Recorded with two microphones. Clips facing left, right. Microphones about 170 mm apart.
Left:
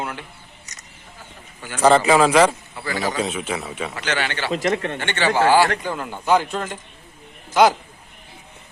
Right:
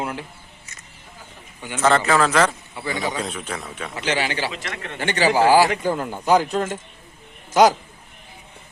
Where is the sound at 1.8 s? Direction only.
15° left (ahead or behind).